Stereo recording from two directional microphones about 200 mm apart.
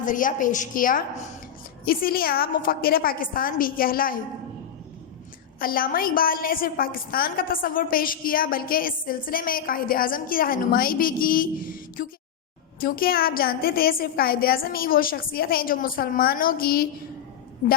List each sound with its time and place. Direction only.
0.0 s a woman's voice: 40° left (ahead or behind)
5.5 s a woman's voice: 45° left (ahead or behind)